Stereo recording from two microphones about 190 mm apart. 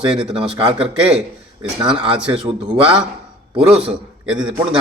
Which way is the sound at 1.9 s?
25° right (ahead or behind).